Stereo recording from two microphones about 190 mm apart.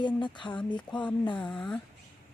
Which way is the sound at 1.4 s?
5° left (ahead or behind).